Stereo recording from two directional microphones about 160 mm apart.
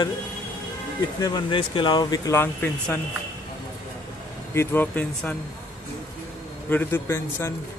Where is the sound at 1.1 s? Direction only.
25° left (ahead or behind); by 3.0 s 10° left (ahead or behind).